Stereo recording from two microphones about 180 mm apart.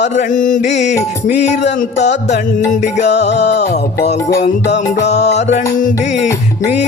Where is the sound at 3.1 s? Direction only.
70° left (ahead or behind).